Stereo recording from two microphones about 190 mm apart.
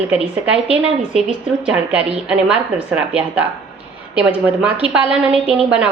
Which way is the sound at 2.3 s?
5° right (ahead or behind).